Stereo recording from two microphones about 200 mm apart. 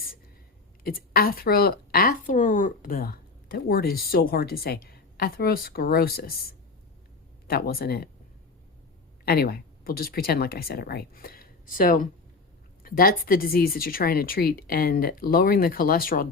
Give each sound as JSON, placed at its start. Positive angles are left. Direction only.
{"t": 0.9, "sound": "a woman's voice", "side_deg": 50}
{"t": 7.4, "sound": "a woman's voice", "side_deg": 50}
{"t": 9.2, "sound": "a woman's voice", "side_deg": 50}